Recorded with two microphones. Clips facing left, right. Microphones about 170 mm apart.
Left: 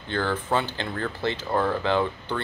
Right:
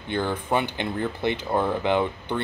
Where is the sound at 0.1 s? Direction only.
15° right (ahead or behind).